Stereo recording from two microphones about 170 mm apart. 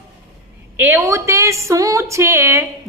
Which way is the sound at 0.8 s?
15° right (ahead or behind).